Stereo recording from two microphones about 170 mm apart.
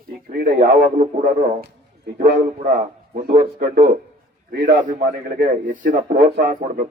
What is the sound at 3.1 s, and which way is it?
Speech, 60° right (ahead or behind).